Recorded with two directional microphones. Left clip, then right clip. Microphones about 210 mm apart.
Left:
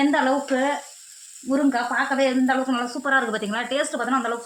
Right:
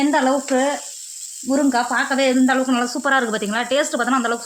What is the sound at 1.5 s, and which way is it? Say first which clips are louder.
Speech: right 3 dB; 50° right (ahead or behind).